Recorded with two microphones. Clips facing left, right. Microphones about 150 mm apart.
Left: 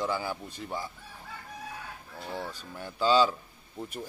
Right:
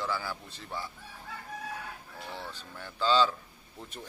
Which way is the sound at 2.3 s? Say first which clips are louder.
Left 6 dB; 10° left (ahead or behind).